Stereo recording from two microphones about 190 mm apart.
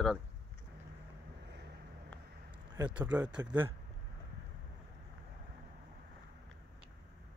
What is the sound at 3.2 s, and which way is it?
Speech, 20° right (ahead or behind).